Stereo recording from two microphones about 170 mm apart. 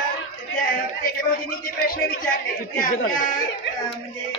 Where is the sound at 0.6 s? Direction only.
55° left (ahead or behind).